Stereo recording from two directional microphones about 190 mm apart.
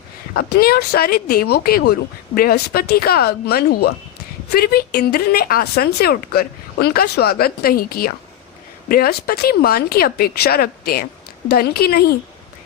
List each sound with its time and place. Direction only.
0.3 s speech: 55° left (ahead or behind)